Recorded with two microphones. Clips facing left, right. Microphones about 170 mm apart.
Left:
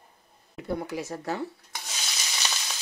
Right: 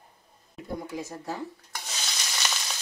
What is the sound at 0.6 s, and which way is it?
Speech, 75° left (ahead or behind).